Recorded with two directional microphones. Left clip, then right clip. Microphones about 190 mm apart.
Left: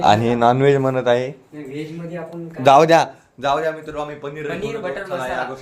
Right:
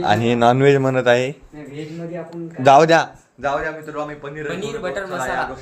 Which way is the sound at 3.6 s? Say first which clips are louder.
Left 2 dB; 10° left (ahead or behind).